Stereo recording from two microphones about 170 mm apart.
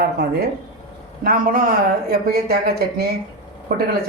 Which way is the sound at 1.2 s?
55° right (ahead or behind).